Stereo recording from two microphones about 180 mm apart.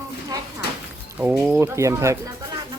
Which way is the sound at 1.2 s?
10° right (ahead or behind).